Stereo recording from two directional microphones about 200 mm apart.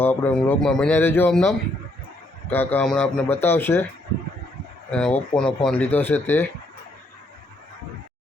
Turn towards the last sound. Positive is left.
turn(degrees=10)  # may be behind; listen again after turning